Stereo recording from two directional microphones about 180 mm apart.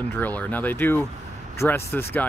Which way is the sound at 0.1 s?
10° left (ahead or behind).